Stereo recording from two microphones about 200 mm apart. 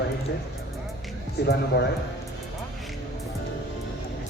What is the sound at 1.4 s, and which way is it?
Speech, 55° left (ahead or behind).